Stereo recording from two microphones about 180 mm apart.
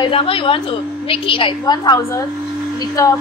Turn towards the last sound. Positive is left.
turn(degrees=20)  # may be behind; listen again after turning